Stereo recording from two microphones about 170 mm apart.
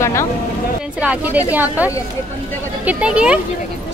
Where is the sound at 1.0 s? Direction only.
10° right (ahead or behind).